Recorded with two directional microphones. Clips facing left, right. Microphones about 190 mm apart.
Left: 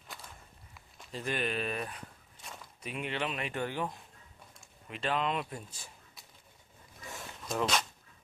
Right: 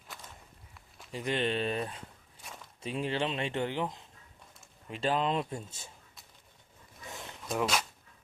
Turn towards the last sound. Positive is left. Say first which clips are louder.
# right 1 dB
turn(degrees=-5)  # may be behind; listen again after turning